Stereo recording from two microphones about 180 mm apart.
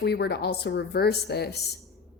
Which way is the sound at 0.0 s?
70° left (ahead or behind).